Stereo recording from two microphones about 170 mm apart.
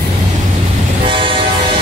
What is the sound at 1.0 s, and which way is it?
Vehicle, 30° right (ahead or behind).